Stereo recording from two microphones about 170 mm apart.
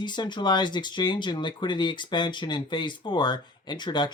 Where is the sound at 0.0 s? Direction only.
25° left (ahead or behind).